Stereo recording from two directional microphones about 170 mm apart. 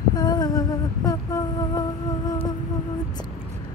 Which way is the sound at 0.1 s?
20° left (ahead or behind).